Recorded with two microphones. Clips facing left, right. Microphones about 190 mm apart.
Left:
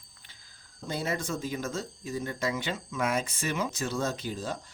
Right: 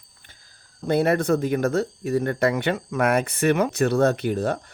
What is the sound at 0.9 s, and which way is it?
Speech, 60° right (ahead or behind).